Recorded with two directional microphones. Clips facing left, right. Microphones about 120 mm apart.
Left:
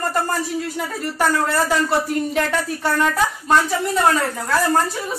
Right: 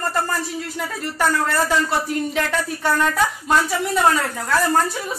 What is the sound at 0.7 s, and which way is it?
Speech, 5° left (ahead or behind).